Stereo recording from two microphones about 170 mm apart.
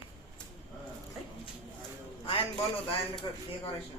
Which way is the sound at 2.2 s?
30° left (ahead or behind).